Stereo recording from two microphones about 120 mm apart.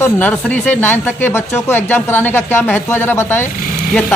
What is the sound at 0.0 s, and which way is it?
Speech, 15° left (ahead or behind).